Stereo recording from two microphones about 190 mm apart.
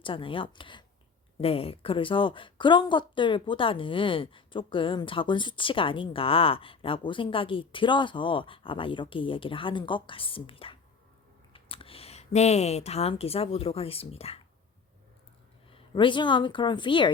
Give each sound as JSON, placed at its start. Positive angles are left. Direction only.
{"t": 0.0, "sound": "a woman's voice", "side_deg": 25}
{"t": 15.7, "sound": "a woman's voice", "side_deg": 25}